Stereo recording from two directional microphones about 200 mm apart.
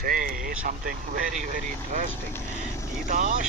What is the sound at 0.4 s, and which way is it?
Speech, 45° right (ahead or behind).